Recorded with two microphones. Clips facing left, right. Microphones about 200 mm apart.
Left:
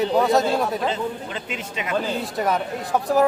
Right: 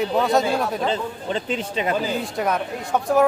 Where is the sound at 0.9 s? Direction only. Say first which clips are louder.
Right 2 dB; 30° right (ahead or behind).